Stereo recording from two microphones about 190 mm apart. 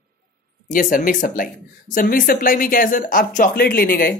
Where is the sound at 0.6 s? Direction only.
45° left (ahead or behind).